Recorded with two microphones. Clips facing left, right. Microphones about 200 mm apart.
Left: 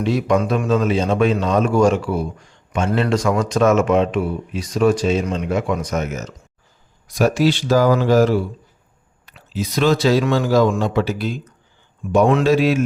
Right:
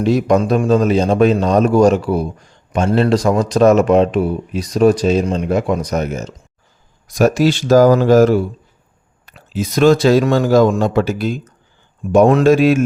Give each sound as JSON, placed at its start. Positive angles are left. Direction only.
{"t": 0.0, "sound": "a man's voice", "side_deg": -40}
{"t": 7.1, "sound": "speech", "side_deg": -45}